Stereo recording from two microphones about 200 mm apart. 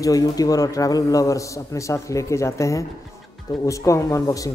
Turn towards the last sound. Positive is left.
turn(degrees=15)  # may be behind; listen again after turning